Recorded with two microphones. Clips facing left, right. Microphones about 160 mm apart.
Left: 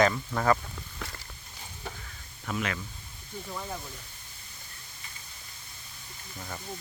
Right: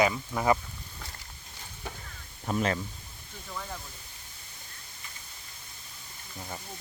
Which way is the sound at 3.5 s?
15° left (ahead or behind).